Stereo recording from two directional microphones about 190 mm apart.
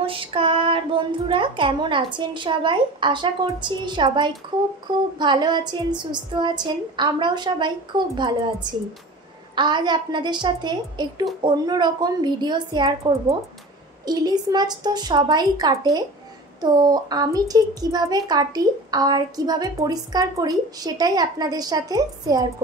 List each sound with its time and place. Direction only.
0.0 s a woman's voice: 25° right (ahead or behind)
9.6 s a woman's voice: 25° right (ahead or behind)